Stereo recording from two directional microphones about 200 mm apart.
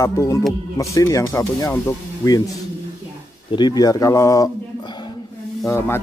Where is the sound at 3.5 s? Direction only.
20° left (ahead or behind).